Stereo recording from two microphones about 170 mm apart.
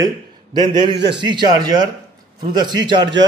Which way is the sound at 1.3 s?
25° right (ahead or behind).